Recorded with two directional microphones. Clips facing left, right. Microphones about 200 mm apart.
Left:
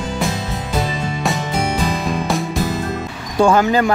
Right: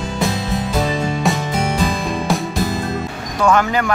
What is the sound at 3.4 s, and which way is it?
Speech, 30° left (ahead or behind).